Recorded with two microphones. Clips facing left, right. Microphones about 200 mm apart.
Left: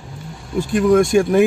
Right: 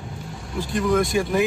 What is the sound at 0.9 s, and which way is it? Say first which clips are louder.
Speech: left 7 dB; 50° left (ahead or behind).